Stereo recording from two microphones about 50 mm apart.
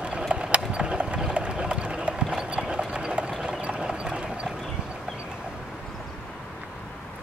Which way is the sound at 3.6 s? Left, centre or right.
Right.